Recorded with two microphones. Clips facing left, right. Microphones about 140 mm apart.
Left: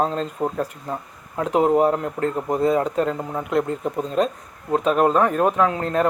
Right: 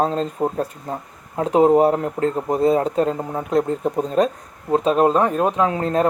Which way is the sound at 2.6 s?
30° right (ahead or behind).